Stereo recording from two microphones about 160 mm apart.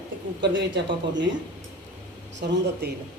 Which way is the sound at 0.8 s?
90° right.